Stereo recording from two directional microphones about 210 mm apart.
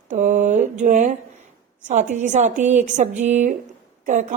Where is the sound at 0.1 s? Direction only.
35° right (ahead or behind).